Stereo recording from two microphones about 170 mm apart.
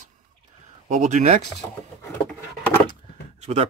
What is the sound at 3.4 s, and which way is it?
Speech, 40° right (ahead or behind).